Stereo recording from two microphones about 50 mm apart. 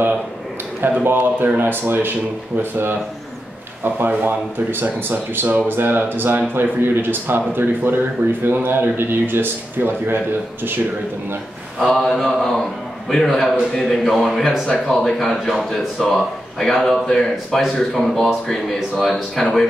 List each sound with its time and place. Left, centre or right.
1.0 s speech: right
4.1 s speech: right
11.8 s speech: centre